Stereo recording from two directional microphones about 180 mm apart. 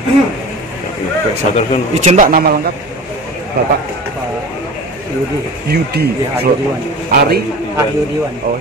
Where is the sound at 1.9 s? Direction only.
45° right (ahead or behind).